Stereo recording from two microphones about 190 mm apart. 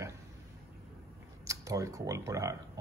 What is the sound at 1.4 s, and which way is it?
Speech, 15° right (ahead or behind).